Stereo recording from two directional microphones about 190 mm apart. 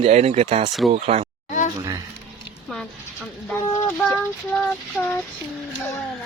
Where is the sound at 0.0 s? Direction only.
35° right (ahead or behind).